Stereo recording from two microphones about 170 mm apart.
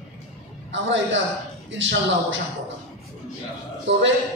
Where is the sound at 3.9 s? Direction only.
90° right.